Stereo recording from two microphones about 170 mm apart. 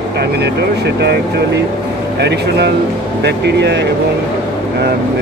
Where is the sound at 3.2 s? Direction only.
90° right.